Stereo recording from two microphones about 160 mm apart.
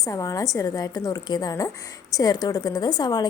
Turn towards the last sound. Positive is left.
turn(degrees=25)  # may be behind; listen again after turning